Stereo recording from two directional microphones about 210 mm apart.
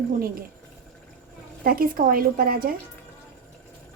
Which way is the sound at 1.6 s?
45° right (ahead or behind).